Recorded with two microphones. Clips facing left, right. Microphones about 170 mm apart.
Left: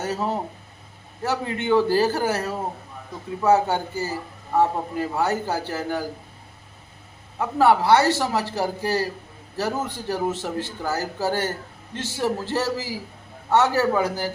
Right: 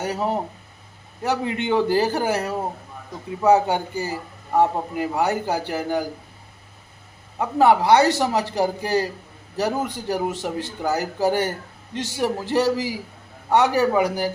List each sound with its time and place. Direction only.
0.0 s a man's voice: 15° right (ahead or behind)
7.3 s a man's voice: 15° right (ahead or behind)